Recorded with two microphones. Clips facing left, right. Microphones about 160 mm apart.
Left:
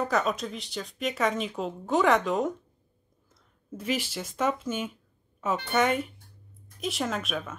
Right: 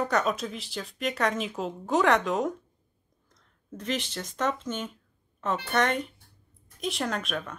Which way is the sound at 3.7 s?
10° left (ahead or behind).